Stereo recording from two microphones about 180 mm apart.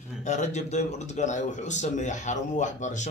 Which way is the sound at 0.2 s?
40° left (ahead or behind).